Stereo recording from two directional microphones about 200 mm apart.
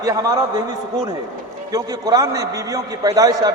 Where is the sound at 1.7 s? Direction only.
20° right (ahead or behind).